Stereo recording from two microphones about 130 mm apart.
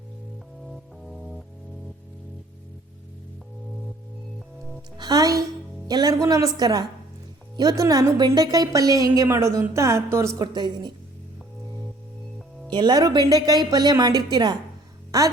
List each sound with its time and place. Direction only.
0.7 s music: centre (ahead or behind)
4.9 s a woman's voice: 30° right (ahead or behind)
12.7 s a woman's voice: 35° right (ahead or behind)